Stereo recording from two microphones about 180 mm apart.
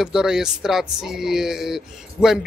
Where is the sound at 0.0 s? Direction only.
5° right (ahead or behind).